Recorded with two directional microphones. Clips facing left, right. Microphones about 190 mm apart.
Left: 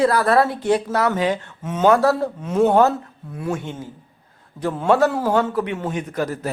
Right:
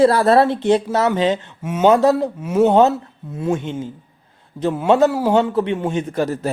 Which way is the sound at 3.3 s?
20° right (ahead or behind).